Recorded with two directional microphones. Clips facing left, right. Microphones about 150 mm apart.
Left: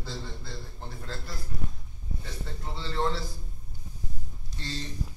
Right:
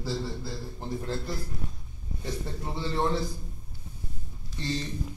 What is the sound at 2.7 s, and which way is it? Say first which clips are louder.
Speech: right 2 dB; 15° right (ahead or behind).